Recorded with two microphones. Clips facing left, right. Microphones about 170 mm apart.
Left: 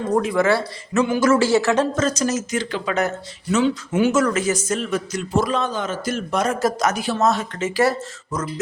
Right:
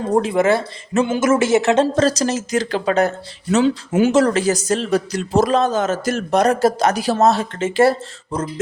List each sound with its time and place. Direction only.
0.1 s speech: 30° right (ahead or behind)